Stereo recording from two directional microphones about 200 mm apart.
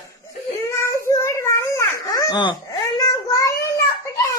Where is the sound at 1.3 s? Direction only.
15° left (ahead or behind).